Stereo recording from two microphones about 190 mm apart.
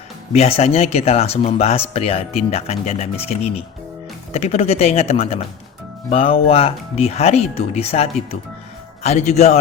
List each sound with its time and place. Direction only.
0.3 s speech: 30° left (ahead or behind)